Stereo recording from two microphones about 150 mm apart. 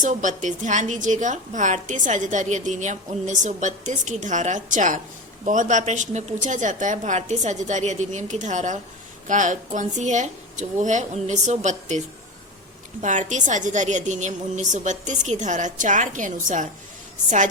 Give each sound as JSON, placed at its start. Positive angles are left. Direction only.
{"t": 0.0, "sound": "a woman's voice", "side_deg": -55}